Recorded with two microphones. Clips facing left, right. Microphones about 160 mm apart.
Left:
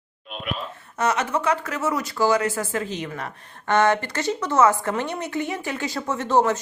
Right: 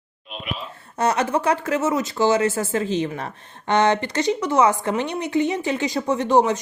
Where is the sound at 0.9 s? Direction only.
30° right (ahead or behind).